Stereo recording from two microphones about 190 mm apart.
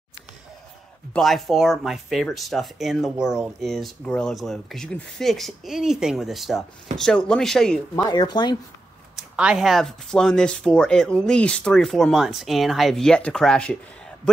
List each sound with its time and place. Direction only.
1.1 s speech: centre (ahead or behind)
7.9 s speech: 20° left (ahead or behind)
9.1 s speech: 5° right (ahead or behind)